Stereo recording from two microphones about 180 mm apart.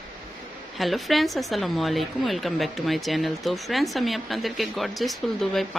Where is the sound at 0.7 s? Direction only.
Centre (ahead or behind).